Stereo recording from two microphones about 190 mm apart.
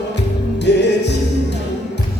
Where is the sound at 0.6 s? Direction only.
65° left (ahead or behind).